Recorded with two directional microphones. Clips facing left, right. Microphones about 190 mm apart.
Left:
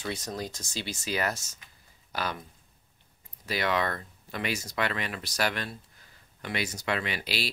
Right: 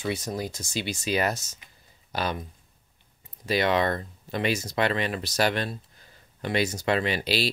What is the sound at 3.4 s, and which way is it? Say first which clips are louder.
Speech: right 5 dB; 25° right (ahead or behind).